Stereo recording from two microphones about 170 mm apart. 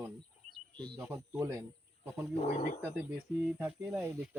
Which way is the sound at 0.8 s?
25° right (ahead or behind).